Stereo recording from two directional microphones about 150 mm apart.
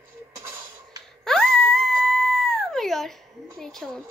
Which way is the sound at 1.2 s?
Centre (ahead or behind).